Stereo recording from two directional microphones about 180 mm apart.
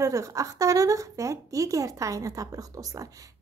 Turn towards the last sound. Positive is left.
turn(degrees=-20)  # may be behind; listen again after turning